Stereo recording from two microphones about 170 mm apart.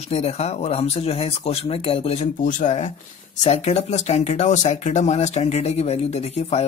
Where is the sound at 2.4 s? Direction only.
45° left (ahead or behind).